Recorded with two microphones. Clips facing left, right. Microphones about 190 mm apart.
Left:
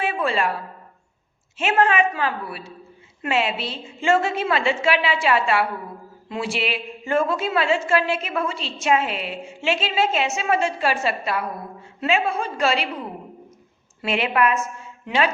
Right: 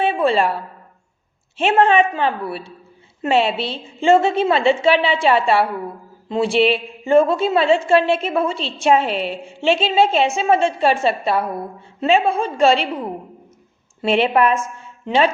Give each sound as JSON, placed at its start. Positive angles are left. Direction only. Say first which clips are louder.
{"t": 0.0, "sound": "a sound", "louder": "right 6 dB", "side_deg": -30}
{"t": 1.5, "sound": "a woman's voice", "louder": "right 5 dB", "side_deg": -30}
{"t": 14.0, "sound": "a woman's voice", "louder": "right 5 dB", "side_deg": -30}